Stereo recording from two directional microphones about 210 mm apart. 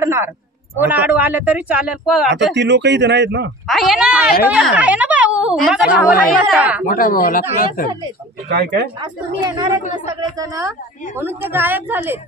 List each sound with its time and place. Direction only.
0.0 s a man's voice: 10° right (ahead or behind)
2.5 s a man's voice: 55° right (ahead or behind)
3.6 s a sound: centre (ahead or behind)
4.5 s speech: 5° right (ahead or behind)
6.9 s speech: 40° left (ahead or behind)
8.5 s speech: 50° right (ahead or behind)
9.0 s a man's voice: 20° right (ahead or behind)